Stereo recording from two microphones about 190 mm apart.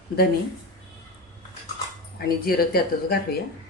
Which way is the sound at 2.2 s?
50° left (ahead or behind).